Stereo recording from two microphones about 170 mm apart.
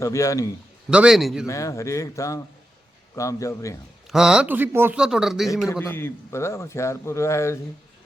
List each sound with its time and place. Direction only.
0.0 s a man's voice: 20° left (ahead or behind)
0.9 s speech: 5° right (ahead or behind)
1.5 s a man's voice: 20° left (ahead or behind)
4.0 s speech: 5° right (ahead or behind)
5.8 s a man's voice: 15° left (ahead or behind)